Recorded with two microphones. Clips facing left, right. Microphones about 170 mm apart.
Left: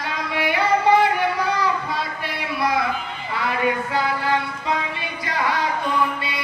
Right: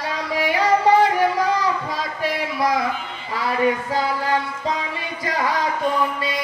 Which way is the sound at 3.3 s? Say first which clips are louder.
Right 2 dB; 40° right (ahead or behind).